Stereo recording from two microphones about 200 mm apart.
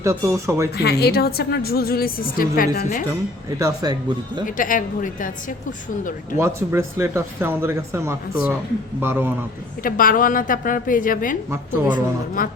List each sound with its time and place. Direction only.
0.0 s speech: 15° right (ahead or behind)
0.8 s a woman's voice: 55° left (ahead or behind)
3.6 s speech: 20° right (ahead or behind)
4.4 s a woman's voice: 40° left (ahead or behind)
6.3 s speech: 15° right (ahead or behind)
9.8 s a woman's voice: 45° left (ahead or behind)